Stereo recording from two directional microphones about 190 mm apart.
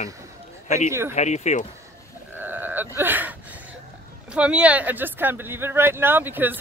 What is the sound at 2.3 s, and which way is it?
Cattle, 10° right (ahead or behind).